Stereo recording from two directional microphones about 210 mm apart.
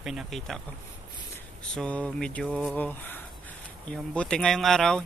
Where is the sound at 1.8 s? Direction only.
5° left (ahead or behind).